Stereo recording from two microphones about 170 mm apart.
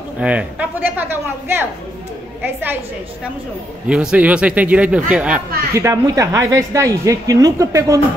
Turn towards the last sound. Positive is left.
turn(degrees=-20)  # may be behind; listen again after turning